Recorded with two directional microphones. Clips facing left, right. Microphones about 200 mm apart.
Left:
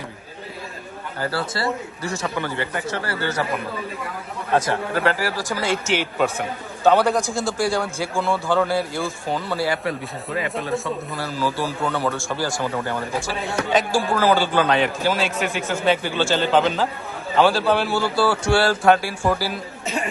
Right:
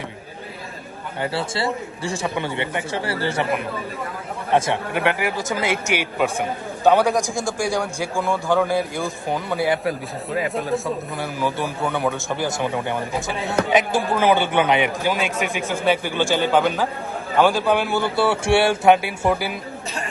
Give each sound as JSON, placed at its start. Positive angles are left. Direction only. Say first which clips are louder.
{"t": 1.2, "sound": "a man's voice", "louder": "right 1 dB", "side_deg": -25}
{"t": 4.5, "sound": "a man's voice", "louder": "right 1 dB", "side_deg": -20}
{"t": 9.6, "sound": "speech", "louder": "right 2 dB", "side_deg": 0}
{"t": 11.2, "sound": "a man's voice", "louder": "left 1 dB", "side_deg": -20}